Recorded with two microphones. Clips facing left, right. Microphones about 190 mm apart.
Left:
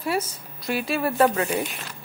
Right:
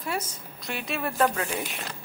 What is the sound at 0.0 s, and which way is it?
Speech, 10° left (ahead or behind).